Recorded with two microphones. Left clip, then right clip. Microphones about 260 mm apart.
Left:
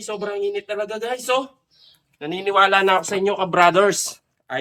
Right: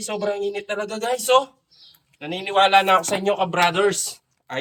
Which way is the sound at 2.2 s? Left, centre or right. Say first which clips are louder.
Left 1 dB; centre.